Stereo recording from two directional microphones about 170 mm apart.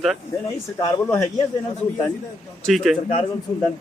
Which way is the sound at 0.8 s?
20° left (ahead or behind).